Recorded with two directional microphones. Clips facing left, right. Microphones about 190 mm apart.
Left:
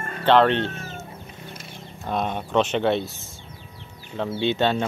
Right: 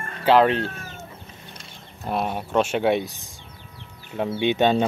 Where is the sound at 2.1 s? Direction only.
5° right (ahead or behind).